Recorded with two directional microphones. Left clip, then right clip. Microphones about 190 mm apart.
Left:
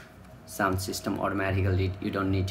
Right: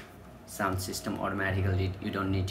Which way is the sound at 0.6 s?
20° left (ahead or behind).